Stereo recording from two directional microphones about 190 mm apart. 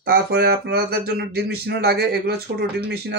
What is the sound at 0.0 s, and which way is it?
Speech, 55° right (ahead or behind).